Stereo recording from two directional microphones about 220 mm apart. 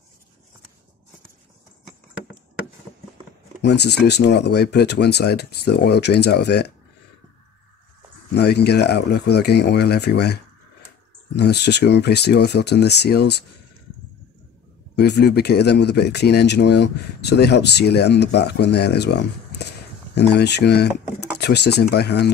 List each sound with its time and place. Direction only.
3.6 s speech: 50° left (ahead or behind)
8.4 s speech: 50° left (ahead or behind)
15.0 s speech: 50° left (ahead or behind)